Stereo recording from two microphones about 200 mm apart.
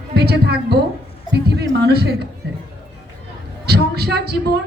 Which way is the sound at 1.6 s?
55° right (ahead or behind).